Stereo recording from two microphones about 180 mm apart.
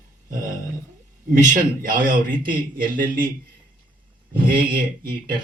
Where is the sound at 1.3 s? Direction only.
45° right (ahead or behind).